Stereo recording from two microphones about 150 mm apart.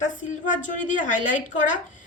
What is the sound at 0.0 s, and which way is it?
A woman's voice, 60° left (ahead or behind).